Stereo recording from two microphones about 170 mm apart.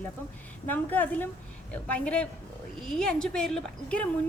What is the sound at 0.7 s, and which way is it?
A woman's voice, 10° left (ahead or behind).